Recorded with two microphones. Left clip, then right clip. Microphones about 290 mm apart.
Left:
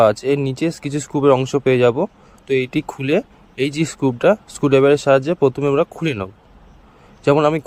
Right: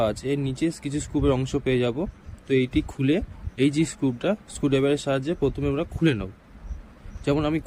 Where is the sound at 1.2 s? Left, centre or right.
Left.